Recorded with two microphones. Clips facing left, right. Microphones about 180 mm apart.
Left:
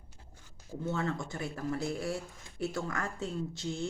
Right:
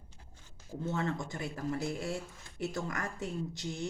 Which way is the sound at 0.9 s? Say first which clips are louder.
Left 1 dB; 20° right (ahead or behind).